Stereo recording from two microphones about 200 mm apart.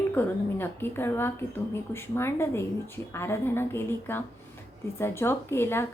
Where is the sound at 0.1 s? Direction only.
10° left (ahead or behind).